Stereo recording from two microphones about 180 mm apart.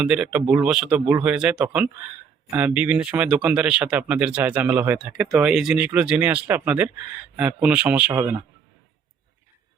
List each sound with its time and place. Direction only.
0.0 s speech: 5° right (ahead or behind)
8.1 s speech: 20° right (ahead or behind)